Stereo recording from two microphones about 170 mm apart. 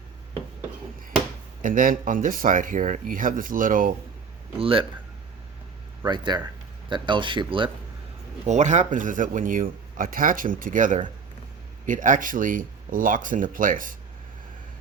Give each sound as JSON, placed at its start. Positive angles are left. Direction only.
{"t": 1.6, "sound": "speech", "side_deg": -55}
{"t": 4.6, "sound": "speech", "side_deg": -30}
{"t": 6.1, "sound": "speech", "side_deg": -25}
{"t": 8.4, "sound": "speech", "side_deg": -45}